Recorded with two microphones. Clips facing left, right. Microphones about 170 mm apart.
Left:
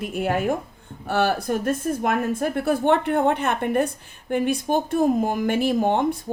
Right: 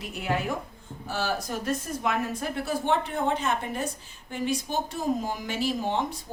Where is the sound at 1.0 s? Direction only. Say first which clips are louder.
Left 8 dB; 60° left (ahead or behind).